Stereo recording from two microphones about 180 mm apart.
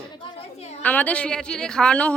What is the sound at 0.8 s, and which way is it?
Speech, 10° left (ahead or behind).